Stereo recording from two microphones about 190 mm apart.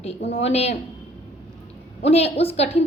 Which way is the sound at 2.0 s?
35° left (ahead or behind).